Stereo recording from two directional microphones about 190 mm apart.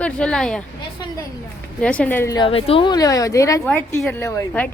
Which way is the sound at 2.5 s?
30° left (ahead or behind).